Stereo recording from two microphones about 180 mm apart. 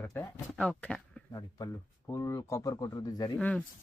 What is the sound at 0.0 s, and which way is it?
Speech, 10° left (ahead or behind).